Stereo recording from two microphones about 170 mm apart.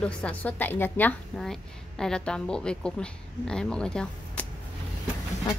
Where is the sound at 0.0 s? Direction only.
10° left (ahead or behind).